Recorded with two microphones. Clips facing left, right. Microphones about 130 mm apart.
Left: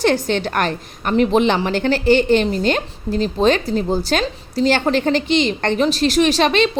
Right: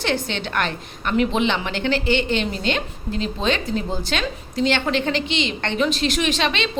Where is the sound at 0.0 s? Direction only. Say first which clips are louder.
Left 7 dB; 45° left (ahead or behind).